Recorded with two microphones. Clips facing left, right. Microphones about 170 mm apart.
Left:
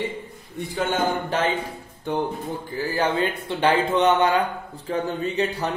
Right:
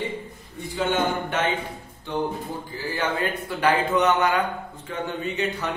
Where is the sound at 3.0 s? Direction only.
25° left (ahead or behind).